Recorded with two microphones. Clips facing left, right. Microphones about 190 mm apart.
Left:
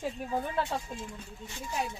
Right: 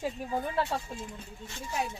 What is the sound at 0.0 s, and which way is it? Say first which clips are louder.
Speech: right 1 dB; 5° right (ahead or behind).